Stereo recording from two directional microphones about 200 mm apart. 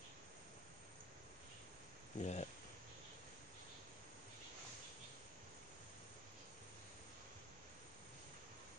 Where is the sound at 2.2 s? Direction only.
35° left (ahead or behind).